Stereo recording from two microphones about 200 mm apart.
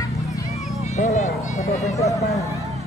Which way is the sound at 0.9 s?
35° left (ahead or behind).